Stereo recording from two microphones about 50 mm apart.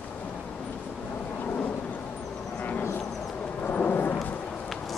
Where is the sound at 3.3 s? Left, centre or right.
Left.